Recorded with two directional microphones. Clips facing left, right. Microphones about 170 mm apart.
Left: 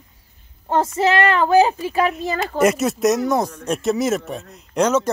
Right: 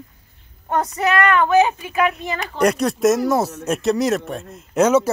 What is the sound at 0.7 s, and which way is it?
Speech, 25° left (ahead or behind).